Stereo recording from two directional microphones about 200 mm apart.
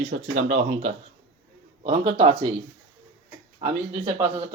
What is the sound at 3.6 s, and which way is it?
Speech, 35° right (ahead or behind).